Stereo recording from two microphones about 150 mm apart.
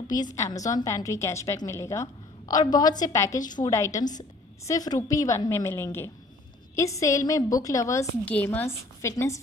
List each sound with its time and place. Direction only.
0.1 s a woman's voice: 25° left (ahead or behind)
8.3 s a woman's voice: 10° left (ahead or behind)